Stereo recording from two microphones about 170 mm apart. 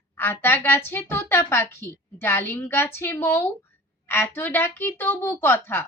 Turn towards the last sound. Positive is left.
turn(degrees=10)  # may be behind; listen again after turning